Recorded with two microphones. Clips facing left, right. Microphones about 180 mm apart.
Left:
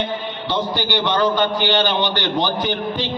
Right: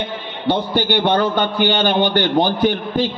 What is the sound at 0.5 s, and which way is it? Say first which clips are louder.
A man's voice: right 5 dB; 55° right (ahead or behind).